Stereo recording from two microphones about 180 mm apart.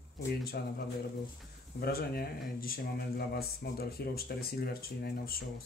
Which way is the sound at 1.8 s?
60° left (ahead or behind).